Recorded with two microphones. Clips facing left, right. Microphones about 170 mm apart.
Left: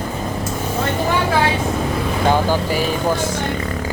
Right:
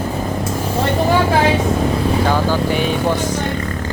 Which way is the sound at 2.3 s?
15° left (ahead or behind).